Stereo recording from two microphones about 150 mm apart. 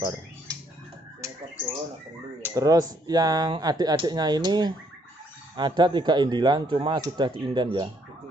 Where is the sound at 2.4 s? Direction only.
25° right (ahead or behind).